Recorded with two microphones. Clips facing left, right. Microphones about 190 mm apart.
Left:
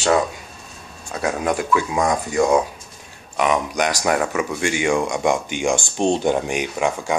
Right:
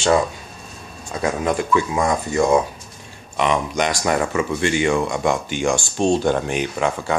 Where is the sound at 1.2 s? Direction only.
5° left (ahead or behind).